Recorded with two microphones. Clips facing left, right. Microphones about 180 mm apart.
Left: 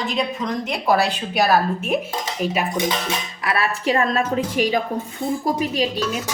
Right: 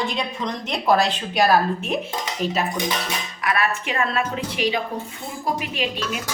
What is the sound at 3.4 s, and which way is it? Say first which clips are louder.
A woman's voice: left 2 dB; 30° left (ahead or behind).